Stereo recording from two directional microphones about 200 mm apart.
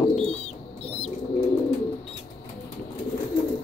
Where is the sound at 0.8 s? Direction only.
30° left (ahead or behind).